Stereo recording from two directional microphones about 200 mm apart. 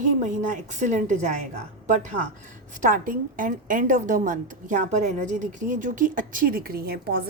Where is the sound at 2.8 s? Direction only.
40° right (ahead or behind).